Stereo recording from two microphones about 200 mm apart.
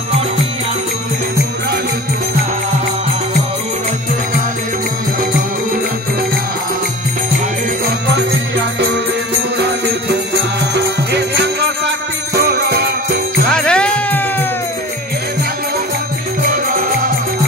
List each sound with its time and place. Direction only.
10.7 s music: 60° right (ahead or behind)
12.4 s jingle bell: 55° right (ahead or behind)
13.5 s music: 5° left (ahead or behind)